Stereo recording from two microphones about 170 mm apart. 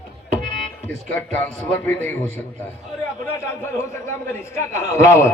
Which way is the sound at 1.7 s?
10° left (ahead or behind).